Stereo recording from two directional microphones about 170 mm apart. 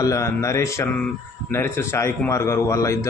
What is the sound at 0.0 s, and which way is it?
A man's voice, 20° left (ahead or behind).